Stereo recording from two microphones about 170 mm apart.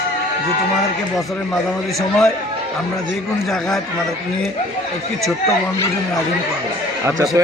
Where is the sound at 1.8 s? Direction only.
Centre (ahead or behind).